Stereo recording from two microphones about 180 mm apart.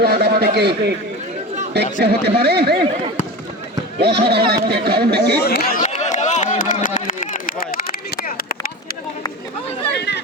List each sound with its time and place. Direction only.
0.0 s a man's voice: 60° right (ahead or behind)
4.0 s speech: 65° right (ahead or behind)
5.5 s a sound: 60° left (ahead or behind)